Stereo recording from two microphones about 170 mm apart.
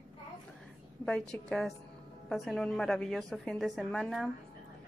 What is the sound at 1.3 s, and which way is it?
A woman's voice, 5° left (ahead or behind).